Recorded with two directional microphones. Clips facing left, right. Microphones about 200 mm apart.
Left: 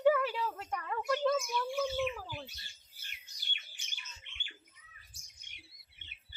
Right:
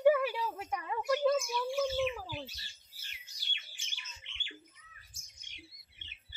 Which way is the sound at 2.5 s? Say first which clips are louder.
Right 2 dB; 55° left (ahead or behind).